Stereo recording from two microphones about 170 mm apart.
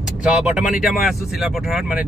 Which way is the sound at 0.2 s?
5° right (ahead or behind).